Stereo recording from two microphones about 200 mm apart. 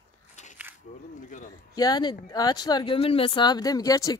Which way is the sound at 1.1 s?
40° left (ahead or behind).